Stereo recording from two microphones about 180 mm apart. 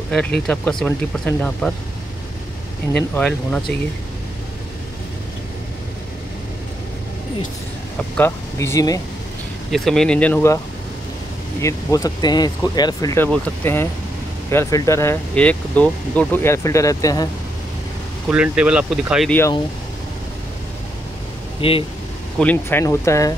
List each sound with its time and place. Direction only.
0.1 s speech: 5° left (ahead or behind)
2.9 s speech: 5° left (ahead or behind)
8.2 s speech: 15° left (ahead or behind)
9.7 s speech: centre (ahead or behind)
11.6 s speech: 20° left (ahead or behind)
18.3 s speech: 5° right (ahead or behind)
21.5 s speech: 30° left (ahead or behind)
22.4 s speech: 10° left (ahead or behind)